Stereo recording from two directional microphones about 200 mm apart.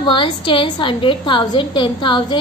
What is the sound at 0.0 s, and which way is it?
Speech, 25° left (ahead or behind).